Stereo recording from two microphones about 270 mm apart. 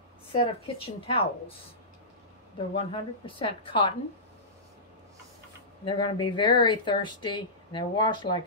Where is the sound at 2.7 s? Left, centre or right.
Centre.